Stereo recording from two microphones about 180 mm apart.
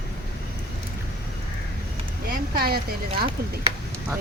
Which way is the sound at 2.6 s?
60° right (ahead or behind).